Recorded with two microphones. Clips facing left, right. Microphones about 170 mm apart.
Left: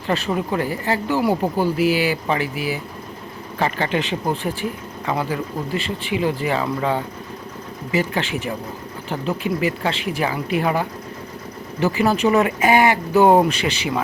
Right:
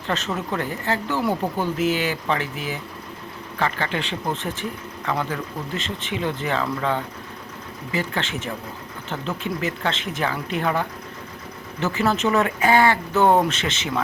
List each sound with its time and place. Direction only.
0.1 s speech: 10° left (ahead or behind)